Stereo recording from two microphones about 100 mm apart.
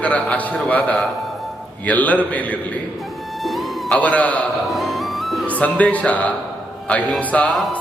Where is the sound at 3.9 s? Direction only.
15° left (ahead or behind).